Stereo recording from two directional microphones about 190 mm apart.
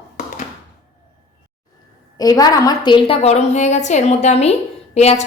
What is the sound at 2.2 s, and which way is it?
A woman's voice, 20° left (ahead or behind).